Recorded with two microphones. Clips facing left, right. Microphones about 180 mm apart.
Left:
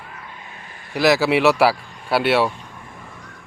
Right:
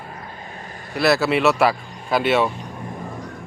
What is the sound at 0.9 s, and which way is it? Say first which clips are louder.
Speech: left 2 dB; 15° left (ahead or behind).